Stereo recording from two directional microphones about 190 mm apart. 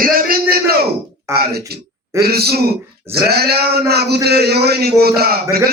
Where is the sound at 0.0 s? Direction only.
50° right (ahead or behind).